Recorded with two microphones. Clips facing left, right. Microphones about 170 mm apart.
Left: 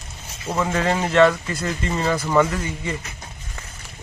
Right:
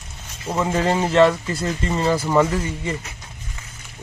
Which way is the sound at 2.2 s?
5° right (ahead or behind).